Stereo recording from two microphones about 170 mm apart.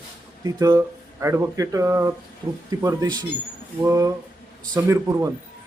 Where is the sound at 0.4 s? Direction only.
20° right (ahead or behind).